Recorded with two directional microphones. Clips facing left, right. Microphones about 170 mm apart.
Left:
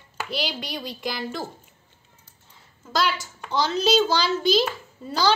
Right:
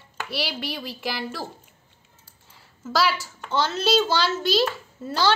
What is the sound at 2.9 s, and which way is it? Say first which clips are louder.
A child's voice: right 1 dB; 5° right (ahead or behind).